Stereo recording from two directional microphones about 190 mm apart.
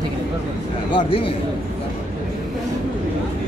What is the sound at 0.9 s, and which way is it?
Speech, 30° left (ahead or behind).